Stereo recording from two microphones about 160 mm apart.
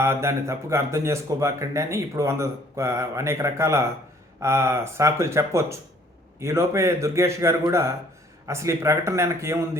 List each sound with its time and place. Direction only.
0.0 s speech: 15° right (ahead or behind)